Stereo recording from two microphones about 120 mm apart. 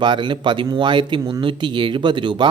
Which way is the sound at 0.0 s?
40° right (ahead or behind).